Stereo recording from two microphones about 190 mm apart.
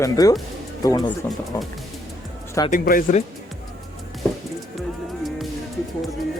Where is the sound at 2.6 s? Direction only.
45° left (ahead or behind).